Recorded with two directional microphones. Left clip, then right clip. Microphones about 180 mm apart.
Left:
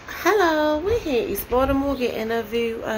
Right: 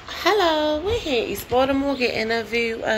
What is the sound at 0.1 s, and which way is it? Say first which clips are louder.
A child's voice: even; 35° left (ahead or behind).